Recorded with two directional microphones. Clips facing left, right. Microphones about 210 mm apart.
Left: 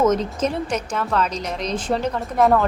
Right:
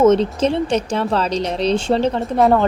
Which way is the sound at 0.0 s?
30° right (ahead or behind).